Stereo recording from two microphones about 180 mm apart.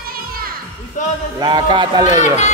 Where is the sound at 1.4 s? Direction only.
25° right (ahead or behind).